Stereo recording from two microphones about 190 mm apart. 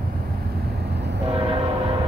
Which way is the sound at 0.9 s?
60° right (ahead or behind).